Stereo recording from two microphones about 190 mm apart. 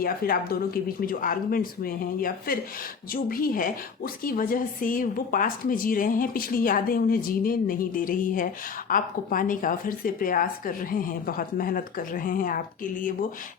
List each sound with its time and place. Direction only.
0.0 s a woman's voice: 50° left (ahead or behind)